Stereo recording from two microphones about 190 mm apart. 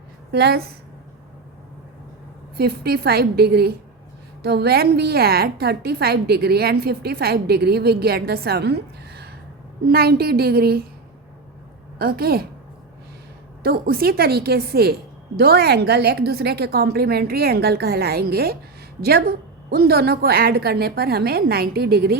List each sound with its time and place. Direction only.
0.3 s a woman's voice: 60° right (ahead or behind)
2.6 s a woman's voice: 55° right (ahead or behind)
11.9 s a woman's voice: 55° right (ahead or behind)
13.6 s a woman's voice: 50° right (ahead or behind)